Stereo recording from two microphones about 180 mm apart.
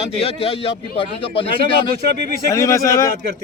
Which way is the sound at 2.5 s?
15° left (ahead or behind).